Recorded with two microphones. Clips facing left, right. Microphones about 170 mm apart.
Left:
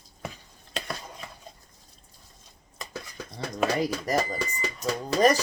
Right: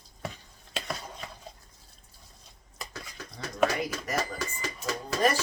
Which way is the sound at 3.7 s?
35° left (ahead or behind).